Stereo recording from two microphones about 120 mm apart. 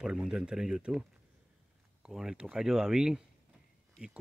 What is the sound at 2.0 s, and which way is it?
Speech, 5° right (ahead or behind).